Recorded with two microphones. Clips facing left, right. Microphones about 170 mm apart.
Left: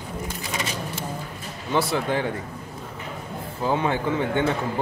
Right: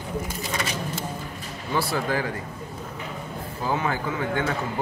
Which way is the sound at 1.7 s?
20° left (ahead or behind).